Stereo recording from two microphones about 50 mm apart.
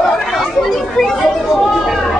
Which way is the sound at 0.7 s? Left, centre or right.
Centre.